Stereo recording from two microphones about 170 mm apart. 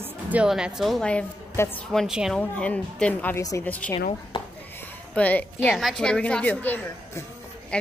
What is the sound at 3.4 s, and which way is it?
Speech, 20° left (ahead or behind).